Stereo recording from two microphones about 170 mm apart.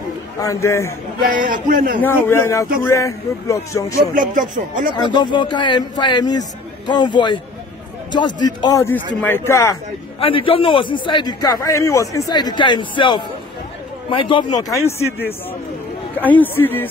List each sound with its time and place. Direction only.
0.4 s a man's voice: 15° left (ahead or behind)
1.2 s speech: 55° right (ahead or behind)
2.0 s a man's voice: 15° left (ahead or behind)
4.1 s speech: 50° right (ahead or behind)
4.9 s a man's voice: 25° left (ahead or behind)
8.4 s a man's voice: 25° left (ahead or behind)
10.2 s a man's voice: 30° left (ahead or behind); by 16.8 s 10° left (ahead or behind)